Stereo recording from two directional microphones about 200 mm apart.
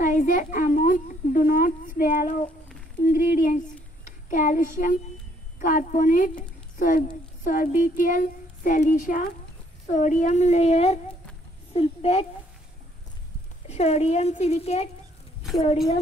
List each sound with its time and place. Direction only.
0.0 s a woman's voice: 40° left (ahead or behind)
13.7 s speech: 30° left (ahead or behind)